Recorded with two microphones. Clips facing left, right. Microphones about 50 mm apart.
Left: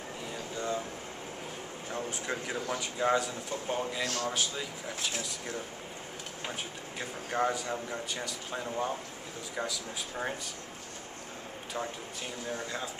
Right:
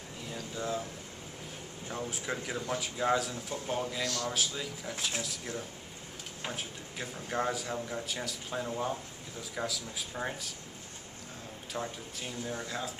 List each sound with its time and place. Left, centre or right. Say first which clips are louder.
0.3 s air conditioning: left 1 dB; centre
1.9 s a man's voice: left 1 dB; centre
4.0 s speech: left 1 dB; left
4.3 s a man's voice: left 1 dB; centre
11.7 s a man's voice: left 1 dB; centre